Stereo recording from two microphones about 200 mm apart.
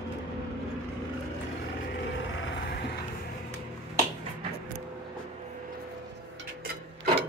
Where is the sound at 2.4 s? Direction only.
60° left (ahead or behind).